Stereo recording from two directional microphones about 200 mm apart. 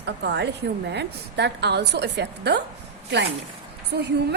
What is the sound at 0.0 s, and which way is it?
A woman's voice, 60° right (ahead or behind).